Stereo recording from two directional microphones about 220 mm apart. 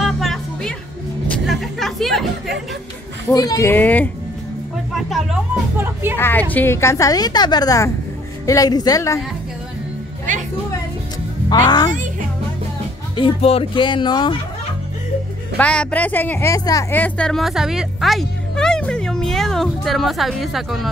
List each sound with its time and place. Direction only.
0.0 s music: centre (ahead or behind)
1.3 s a sound: centre (ahead or behind)
3.3 s a woman's voice: 15° left (ahead or behind); by 6.1 s 5° right (ahead or behind)
6.1 s a woman's voice: 10° left (ahead or behind)
11.4 s speech: 20° left (ahead or behind)
11.9 s music: 35° right (ahead or behind)
13.1 s speech: 25° left (ahead or behind)
15.5 s a woman's voice: 5° left (ahead or behind)